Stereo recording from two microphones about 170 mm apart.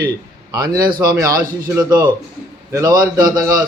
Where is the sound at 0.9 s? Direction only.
25° right (ahead or behind).